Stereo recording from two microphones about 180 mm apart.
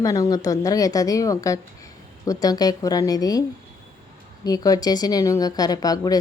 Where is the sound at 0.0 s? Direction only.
20° left (ahead or behind).